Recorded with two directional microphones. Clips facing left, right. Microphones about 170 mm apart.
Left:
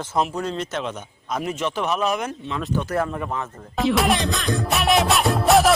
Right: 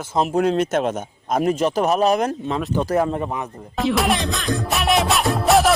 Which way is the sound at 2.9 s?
25° right (ahead or behind).